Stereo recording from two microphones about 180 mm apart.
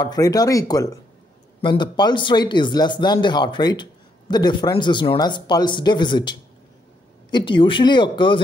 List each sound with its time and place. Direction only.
0.0 s speech: 20° left (ahead or behind)